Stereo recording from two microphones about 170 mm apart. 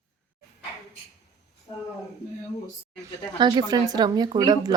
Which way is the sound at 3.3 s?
25° right (ahead or behind).